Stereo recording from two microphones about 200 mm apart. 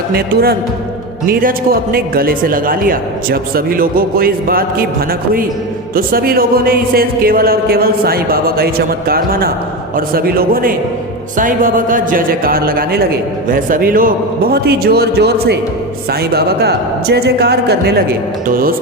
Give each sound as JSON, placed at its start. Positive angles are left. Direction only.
{"t": 0.1, "sound": "speech", "side_deg": -50}
{"t": 6.0, "sound": "speech", "side_deg": -45}